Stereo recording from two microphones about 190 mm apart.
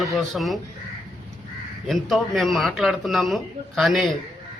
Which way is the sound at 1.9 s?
Centre (ahead or behind).